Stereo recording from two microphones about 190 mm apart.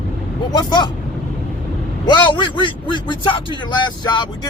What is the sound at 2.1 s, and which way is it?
A man's voice, 25° left (ahead or behind).